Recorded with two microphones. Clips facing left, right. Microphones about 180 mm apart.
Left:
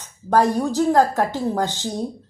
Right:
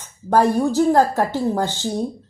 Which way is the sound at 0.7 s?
15° right (ahead or behind).